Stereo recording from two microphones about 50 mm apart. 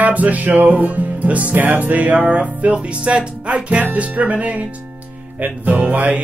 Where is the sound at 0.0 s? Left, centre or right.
Right.